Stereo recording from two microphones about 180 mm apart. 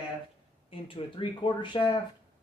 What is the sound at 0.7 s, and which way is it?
Speech, 30° left (ahead or behind).